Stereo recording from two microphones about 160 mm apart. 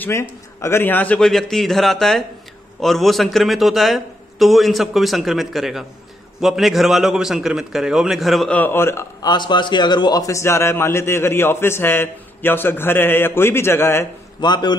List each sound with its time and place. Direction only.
0.0 s a man's voice: 15° left (ahead or behind)
9.3 s a man's voice: 30° left (ahead or behind)
14.4 s a man's voice: 25° left (ahead or behind)